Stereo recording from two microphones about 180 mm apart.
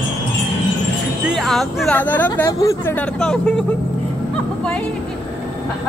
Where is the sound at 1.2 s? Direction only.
Centre (ahead or behind); by 2.9 s 15° left (ahead or behind).